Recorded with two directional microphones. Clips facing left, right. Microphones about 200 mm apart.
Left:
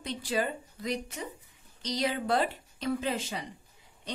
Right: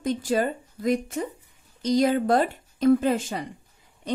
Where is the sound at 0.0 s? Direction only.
45° right (ahead or behind).